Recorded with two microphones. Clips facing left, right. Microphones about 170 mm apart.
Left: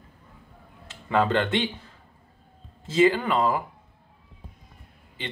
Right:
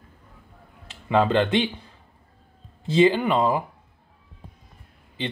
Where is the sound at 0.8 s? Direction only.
15° right (ahead or behind).